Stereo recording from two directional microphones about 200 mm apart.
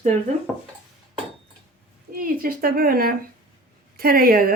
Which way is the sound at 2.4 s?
45° right (ahead or behind).